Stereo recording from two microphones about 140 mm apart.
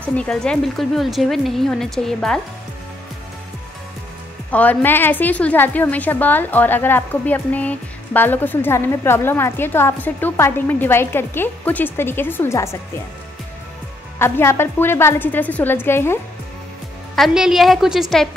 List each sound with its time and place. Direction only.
0.1 s speech: 5° left (ahead or behind)
4.5 s a woman's voice: 10° left (ahead or behind)
14.1 s a woman's voice: 20° left (ahead or behind)
17.1 s speech: centre (ahead or behind)